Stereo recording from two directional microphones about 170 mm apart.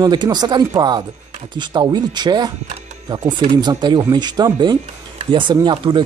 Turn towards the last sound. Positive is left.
turn(degrees=-25)  # may be behind; listen again after turning